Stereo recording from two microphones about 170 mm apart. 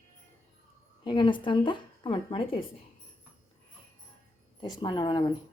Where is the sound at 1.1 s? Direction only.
30° left (ahead or behind).